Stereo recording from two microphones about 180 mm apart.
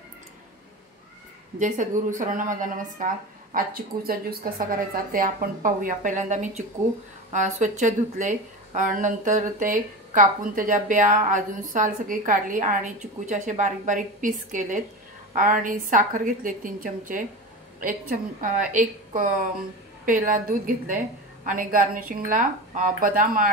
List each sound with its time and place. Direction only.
1.6 s a woman's voice: 45° right (ahead or behind)